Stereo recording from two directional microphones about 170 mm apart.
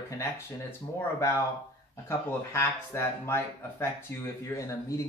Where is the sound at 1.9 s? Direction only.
15° left (ahead or behind).